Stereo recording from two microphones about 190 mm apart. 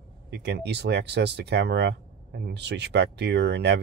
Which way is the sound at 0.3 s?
60° right (ahead or behind).